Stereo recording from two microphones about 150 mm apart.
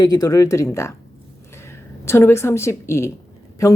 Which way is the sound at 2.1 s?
15° left (ahead or behind).